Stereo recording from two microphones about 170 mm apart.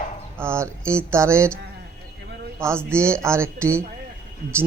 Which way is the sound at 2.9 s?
15° right (ahead or behind).